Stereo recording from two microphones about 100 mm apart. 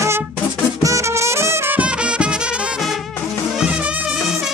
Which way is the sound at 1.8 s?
10° right (ahead or behind).